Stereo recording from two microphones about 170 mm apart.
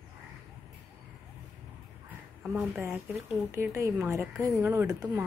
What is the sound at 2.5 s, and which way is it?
Speech, 10° right (ahead or behind).